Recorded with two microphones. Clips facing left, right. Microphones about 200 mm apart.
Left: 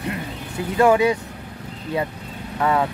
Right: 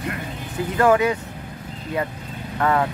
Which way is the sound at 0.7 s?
10° left (ahead or behind).